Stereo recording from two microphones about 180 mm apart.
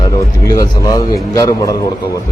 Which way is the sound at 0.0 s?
20° left (ahead or behind).